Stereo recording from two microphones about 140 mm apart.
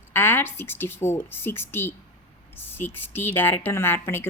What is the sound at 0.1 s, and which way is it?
A woman's voice, 15° left (ahead or behind).